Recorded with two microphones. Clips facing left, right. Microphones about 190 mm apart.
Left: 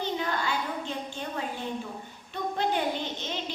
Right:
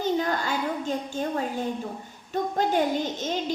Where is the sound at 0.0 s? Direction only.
45° right (ahead or behind).